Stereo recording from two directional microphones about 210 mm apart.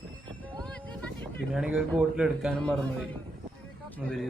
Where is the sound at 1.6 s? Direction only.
5° right (ahead or behind).